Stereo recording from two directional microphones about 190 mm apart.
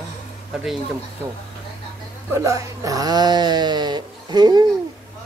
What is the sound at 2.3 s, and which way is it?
Speech, 15° right (ahead or behind).